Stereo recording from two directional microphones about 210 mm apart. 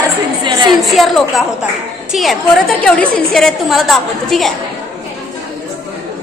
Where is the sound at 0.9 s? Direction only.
Centre (ahead or behind).